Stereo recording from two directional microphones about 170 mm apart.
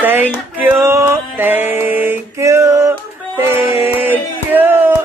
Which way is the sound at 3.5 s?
15° right (ahead or behind).